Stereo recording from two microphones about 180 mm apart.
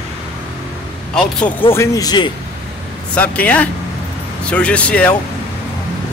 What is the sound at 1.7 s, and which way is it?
Speech, 20° left (ahead or behind).